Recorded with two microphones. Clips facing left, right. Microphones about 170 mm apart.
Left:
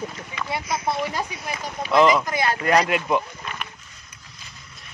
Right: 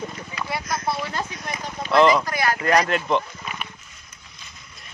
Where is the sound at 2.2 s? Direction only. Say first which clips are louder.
Even; 20° left (ahead or behind).